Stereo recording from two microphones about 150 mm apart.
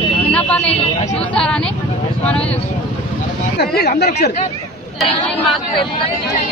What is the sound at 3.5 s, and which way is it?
Speech, 90° left.